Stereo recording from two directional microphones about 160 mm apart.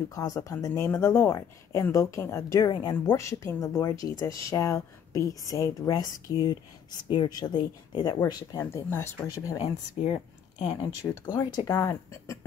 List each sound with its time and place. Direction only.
0.1 s speech: 20° left (ahead or behind)
10.0 s speech: 40° left (ahead or behind)
11.0 s speech: 25° left (ahead or behind)